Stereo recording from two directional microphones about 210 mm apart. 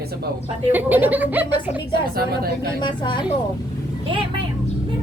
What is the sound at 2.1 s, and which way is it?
Speech, 50° right (ahead or behind).